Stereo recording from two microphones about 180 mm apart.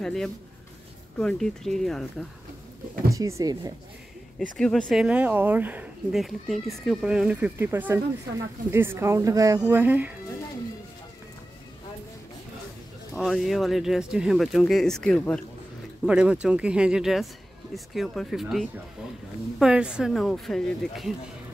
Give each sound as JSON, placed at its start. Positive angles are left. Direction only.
{"t": 0.0, "sound": "speech", "side_deg": 5}
{"t": 3.1, "sound": "speech", "side_deg": -15}
{"t": 4.4, "sound": "speech", "side_deg": 5}
{"t": 13.1, "sound": "speech", "side_deg": 0}
{"t": 16.1, "sound": "speech", "side_deg": -5}